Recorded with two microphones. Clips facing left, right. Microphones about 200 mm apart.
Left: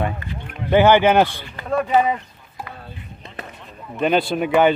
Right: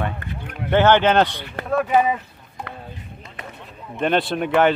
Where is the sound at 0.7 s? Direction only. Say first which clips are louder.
Left 2 dB; 10° left (ahead or behind).